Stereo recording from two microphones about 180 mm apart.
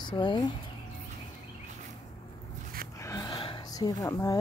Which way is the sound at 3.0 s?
20° left (ahead or behind).